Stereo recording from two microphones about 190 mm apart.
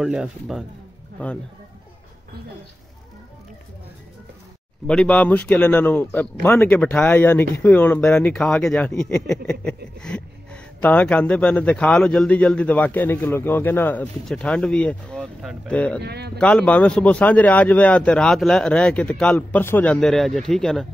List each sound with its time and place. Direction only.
0.0 s a man's voice: 5° right (ahead or behind)
4.8 s speech: 5° left (ahead or behind)
16.0 s speech: 60° right (ahead or behind)
16.3 s a man's voice: 5° left (ahead or behind)